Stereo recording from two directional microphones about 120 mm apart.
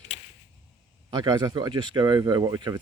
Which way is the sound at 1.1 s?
30° right (ahead or behind).